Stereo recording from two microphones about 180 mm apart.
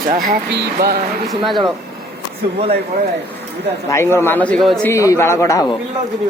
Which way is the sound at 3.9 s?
15° left (ahead or behind).